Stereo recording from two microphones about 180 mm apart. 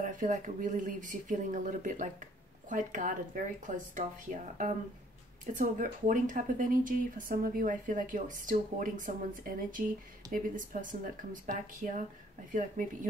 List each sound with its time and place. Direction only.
0.0 s speech: 45° right (ahead or behind)